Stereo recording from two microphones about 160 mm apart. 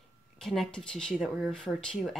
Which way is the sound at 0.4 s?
Centre (ahead or behind).